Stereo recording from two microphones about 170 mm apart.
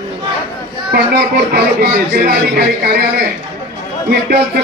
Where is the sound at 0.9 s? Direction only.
70° right (ahead or behind).